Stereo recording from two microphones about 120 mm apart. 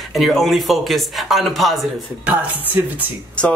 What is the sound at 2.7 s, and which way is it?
Speech, 15° right (ahead or behind).